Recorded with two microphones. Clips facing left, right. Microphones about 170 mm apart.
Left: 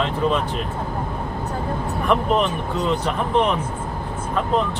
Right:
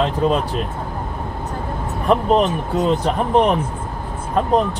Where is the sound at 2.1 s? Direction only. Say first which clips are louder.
Right 3 dB; 35° right (ahead or behind).